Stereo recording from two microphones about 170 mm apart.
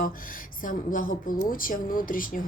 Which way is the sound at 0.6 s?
50° left (ahead or behind).